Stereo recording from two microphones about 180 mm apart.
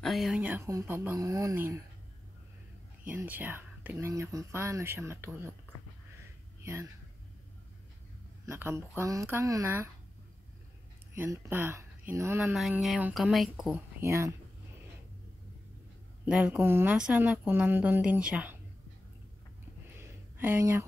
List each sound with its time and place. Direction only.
0.0 s speech: centre (ahead or behind); by 1.8 s 15° right (ahead or behind)
3.1 s speech: 10° right (ahead or behind)
6.6 s speech: 15° right (ahead or behind)
8.5 s speech: 15° right (ahead or behind)
11.1 s speech: 10° right (ahead or behind)
14.0 s speech: 15° right (ahead or behind)
16.3 s speech: 5° right (ahead or behind)
20.0 s a sound: 15° right (ahead or behind)